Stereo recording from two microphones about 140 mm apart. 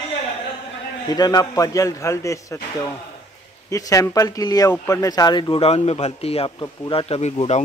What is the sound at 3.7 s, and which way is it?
A man's voice, 25° left (ahead or behind).